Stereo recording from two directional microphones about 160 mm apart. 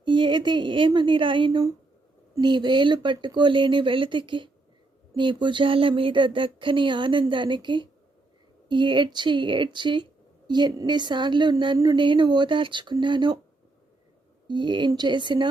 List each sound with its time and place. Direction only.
0.0 s speech: 30° right (ahead or behind)
14.4 s speech: 30° right (ahead or behind)